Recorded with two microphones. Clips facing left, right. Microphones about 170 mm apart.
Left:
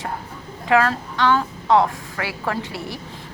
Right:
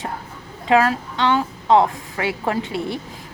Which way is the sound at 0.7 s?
15° right (ahead or behind).